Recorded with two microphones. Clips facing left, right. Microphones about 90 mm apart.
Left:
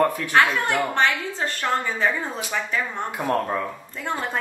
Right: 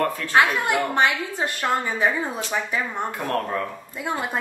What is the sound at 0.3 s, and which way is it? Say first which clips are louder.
A woman's voice: even; 15° right (ahead or behind).